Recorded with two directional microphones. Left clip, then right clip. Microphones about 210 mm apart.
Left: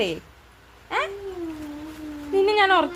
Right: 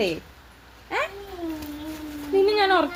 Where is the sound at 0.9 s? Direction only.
25° left (ahead or behind).